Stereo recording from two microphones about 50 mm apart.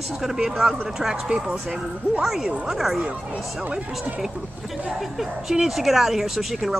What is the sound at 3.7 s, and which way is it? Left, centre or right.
Speech, right.